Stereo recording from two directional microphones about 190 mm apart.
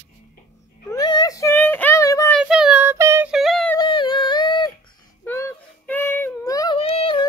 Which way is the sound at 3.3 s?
Centre (ahead or behind).